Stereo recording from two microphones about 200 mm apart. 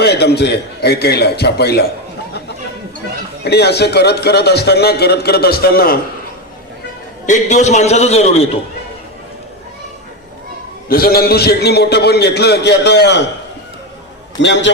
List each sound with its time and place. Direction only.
0.0 s a man's voice: 55° left (ahead or behind)
3.4 s a man's voice: 55° left (ahead or behind)
7.3 s a man's voice: 35° left (ahead or behind)
10.8 s a man's voice: 50° left (ahead or behind)
14.4 s a man's voice: 60° left (ahead or behind)